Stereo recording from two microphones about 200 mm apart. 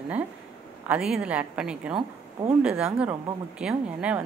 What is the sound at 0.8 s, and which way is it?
A woman's voice, 5° right (ahead or behind).